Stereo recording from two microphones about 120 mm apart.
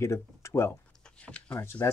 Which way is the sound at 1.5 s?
20° left (ahead or behind).